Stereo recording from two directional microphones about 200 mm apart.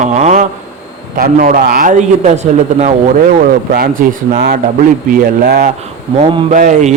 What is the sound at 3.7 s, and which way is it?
Speech, 45° right (ahead or behind).